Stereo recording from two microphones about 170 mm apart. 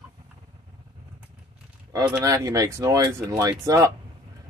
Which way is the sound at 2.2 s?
20° right (ahead or behind).